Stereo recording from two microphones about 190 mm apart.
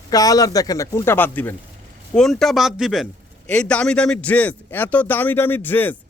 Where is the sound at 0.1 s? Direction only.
20° left (ahead or behind).